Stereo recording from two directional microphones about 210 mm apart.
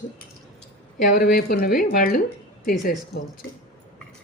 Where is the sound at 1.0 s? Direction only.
40° left (ahead or behind).